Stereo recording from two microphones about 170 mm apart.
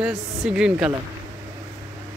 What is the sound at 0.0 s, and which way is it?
Speech, centre (ahead or behind).